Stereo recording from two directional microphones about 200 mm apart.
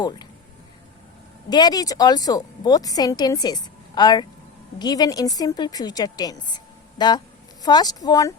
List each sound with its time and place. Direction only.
0.0 s a woman's voice: 20° left (ahead or behind)
1.5 s a woman's voice: 20° left (ahead or behind)
7.6 s a woman's voice: 20° left (ahead or behind)